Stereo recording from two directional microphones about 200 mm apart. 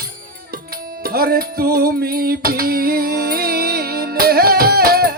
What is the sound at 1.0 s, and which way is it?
Music, 50° right (ahead or behind).